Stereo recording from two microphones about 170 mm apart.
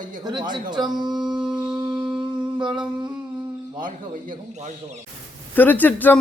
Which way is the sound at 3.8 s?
55° right (ahead or behind).